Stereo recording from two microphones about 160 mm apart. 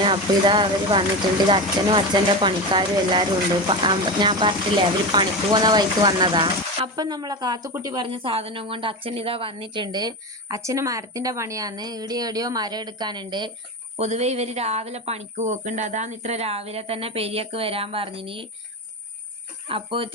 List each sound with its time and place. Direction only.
0.0 s speech: 30° right (ahead or behind)
14.0 s speech: 45° right (ahead or behind)
19.6 s speech: 35° right (ahead or behind)